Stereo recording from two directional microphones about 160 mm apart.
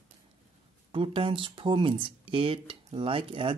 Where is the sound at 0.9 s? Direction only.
35° right (ahead or behind).